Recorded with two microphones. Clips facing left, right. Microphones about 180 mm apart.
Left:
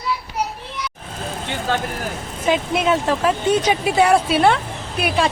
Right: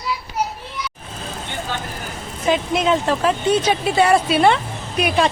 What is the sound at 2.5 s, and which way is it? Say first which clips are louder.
Speech: even; 5° left (ahead or behind).